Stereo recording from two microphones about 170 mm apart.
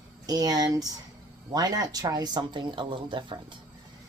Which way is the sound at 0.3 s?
20° right (ahead or behind).